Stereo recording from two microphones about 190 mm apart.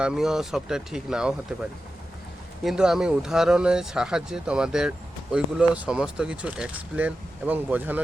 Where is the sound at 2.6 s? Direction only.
5° right (ahead or behind).